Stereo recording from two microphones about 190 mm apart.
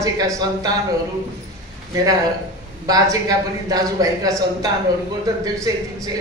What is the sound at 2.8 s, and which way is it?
A man's voice, 20° right (ahead or behind).